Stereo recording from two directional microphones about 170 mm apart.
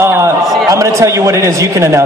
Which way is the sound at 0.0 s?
15° right (ahead or behind).